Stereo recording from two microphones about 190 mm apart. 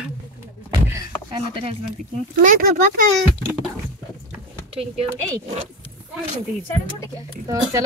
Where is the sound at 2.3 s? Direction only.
45° right (ahead or behind).